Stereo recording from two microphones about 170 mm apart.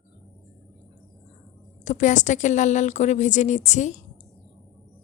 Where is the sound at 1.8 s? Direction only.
45° left (ahead or behind).